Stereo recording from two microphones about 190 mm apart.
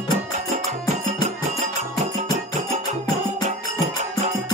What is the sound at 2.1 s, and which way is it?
Music, 40° right (ahead or behind).